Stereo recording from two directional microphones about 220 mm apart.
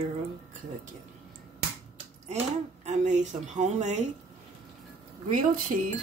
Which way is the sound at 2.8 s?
35° right (ahead or behind).